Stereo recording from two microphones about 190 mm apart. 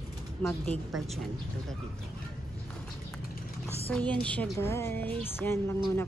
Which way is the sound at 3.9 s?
5° left (ahead or behind).